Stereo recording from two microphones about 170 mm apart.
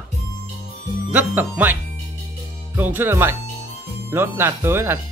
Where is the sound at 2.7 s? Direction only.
10° right (ahead or behind).